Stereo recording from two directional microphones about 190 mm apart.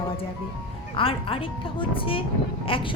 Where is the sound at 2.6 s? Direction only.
30° left (ahead or behind).